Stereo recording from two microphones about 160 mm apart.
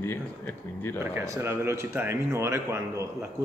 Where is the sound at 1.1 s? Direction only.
20° right (ahead or behind).